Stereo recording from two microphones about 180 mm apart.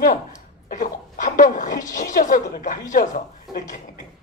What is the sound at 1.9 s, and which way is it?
Speech, 45° left (ahead or behind).